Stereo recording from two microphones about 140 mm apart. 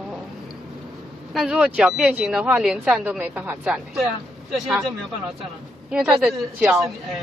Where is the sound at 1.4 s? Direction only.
5° right (ahead or behind).